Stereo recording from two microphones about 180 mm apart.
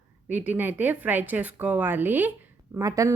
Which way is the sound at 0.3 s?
10° right (ahead or behind).